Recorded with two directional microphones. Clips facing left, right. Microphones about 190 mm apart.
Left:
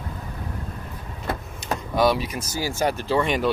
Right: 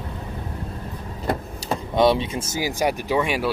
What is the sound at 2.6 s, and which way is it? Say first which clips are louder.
Speech: right 1 dB; 15° right (ahead or behind).